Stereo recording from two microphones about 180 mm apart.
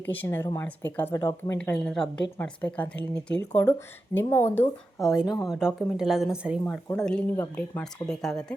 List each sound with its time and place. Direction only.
0.1 s speech: 10° left (ahead or behind)
1.5 s speech: 5° left (ahead or behind)
5.0 s speech: 5° right (ahead or behind)
6.9 s speech: 5° left (ahead or behind)